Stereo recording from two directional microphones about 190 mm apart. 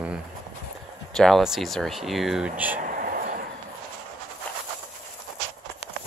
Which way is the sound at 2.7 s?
45° right (ahead or behind).